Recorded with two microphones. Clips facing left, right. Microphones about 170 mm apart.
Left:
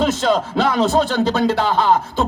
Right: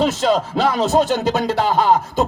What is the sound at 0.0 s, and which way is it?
Speech, 5° right (ahead or behind).